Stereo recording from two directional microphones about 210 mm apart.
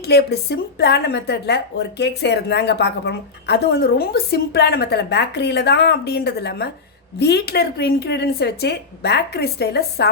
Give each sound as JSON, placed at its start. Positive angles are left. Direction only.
{"t": 0.0, "sound": "a woman's voice", "side_deg": 50}